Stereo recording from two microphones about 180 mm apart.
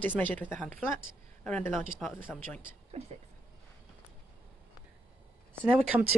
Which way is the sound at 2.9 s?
35° right (ahead or behind).